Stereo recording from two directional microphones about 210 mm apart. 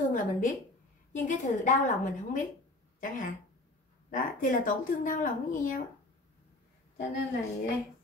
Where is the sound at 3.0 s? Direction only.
40° left (ahead or behind).